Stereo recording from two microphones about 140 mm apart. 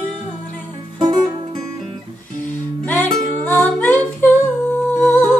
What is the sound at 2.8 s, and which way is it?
Music, 10° left (ahead or behind).